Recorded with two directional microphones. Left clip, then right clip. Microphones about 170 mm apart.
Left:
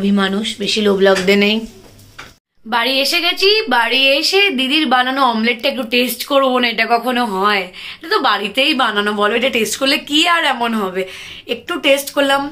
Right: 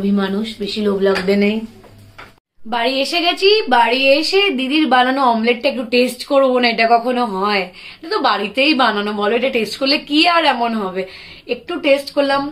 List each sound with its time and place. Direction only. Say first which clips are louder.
0.0 s speech: left 3 dB; 20° left (ahead or behind)
2.7 s a woman's voice: left 2 dB; 10° right (ahead or behind)